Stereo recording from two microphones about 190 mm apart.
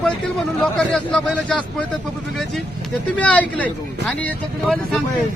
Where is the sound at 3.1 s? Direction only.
5° left (ahead or behind).